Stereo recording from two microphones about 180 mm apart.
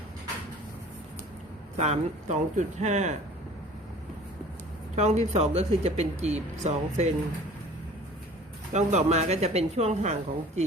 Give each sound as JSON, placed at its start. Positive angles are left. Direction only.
{"t": 1.7, "sound": "speech", "side_deg": -40}
{"t": 4.9, "sound": "speech", "side_deg": -40}
{"t": 8.7, "sound": "speech", "side_deg": -40}